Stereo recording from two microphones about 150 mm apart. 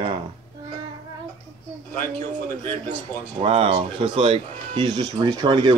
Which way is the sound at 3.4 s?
40° right (ahead or behind).